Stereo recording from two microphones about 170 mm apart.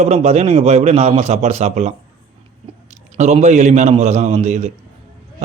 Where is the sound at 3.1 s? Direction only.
40° right (ahead or behind).